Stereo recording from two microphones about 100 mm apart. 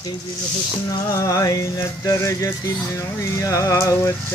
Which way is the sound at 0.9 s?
35° left (ahead or behind).